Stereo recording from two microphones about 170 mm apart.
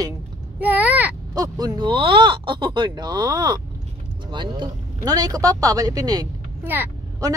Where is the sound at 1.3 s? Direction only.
20° right (ahead or behind).